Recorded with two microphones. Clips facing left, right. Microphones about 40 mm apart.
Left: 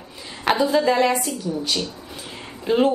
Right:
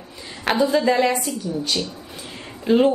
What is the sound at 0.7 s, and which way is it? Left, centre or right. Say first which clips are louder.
A woman's voice: even; centre.